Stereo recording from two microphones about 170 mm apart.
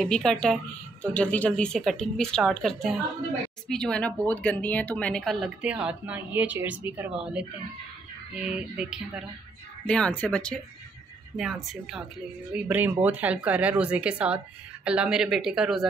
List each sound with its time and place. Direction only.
0.0 s speech: 5° left (ahead or behind)
9.8 s speech: 5° left (ahead or behind)